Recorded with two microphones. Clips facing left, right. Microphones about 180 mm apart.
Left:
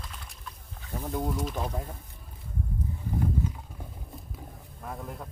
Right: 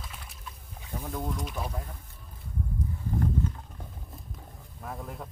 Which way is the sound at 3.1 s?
10° left (ahead or behind).